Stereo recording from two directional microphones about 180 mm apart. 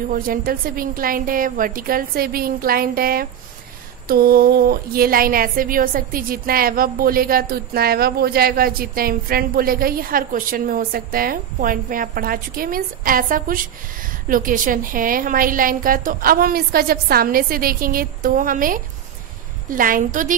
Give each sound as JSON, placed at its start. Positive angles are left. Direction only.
{"t": 0.1, "sound": "a woman's voice", "side_deg": -50}